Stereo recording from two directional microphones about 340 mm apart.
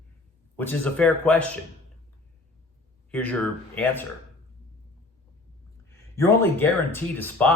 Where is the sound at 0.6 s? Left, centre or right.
Centre.